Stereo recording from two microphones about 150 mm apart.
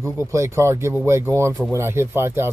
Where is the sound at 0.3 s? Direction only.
20° right (ahead or behind).